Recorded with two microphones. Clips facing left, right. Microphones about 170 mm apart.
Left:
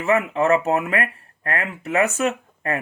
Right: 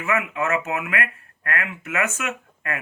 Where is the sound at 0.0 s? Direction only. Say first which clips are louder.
Left 5 dB; 35° left (ahead or behind).